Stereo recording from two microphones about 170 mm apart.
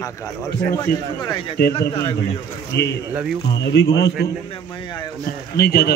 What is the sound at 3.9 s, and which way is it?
Speech, 90° left.